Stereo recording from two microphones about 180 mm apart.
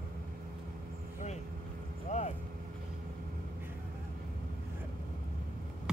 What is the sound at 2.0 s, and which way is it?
Vehicle, 40° left (ahead or behind).